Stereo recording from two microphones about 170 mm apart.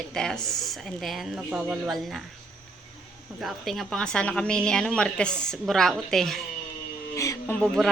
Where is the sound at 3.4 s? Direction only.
Centre (ahead or behind).